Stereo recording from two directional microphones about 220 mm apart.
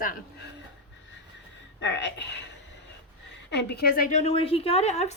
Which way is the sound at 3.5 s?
50° left (ahead or behind).